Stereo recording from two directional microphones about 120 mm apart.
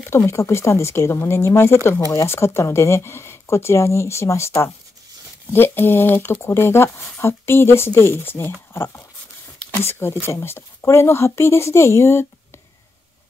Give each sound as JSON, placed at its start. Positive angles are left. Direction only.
{"t": 0.1, "sound": "speech", "side_deg": 25}
{"t": 5.5, "sound": "speech", "side_deg": 20}
{"t": 10.2, "sound": "speech", "side_deg": 20}